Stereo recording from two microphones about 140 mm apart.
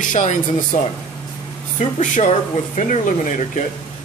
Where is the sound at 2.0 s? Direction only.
60° left (ahead or behind).